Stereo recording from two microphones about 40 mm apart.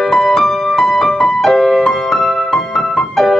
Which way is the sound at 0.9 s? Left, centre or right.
Left.